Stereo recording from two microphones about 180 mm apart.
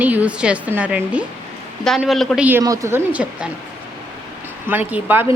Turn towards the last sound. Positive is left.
turn(degrees=-10)  # may be behind; listen again after turning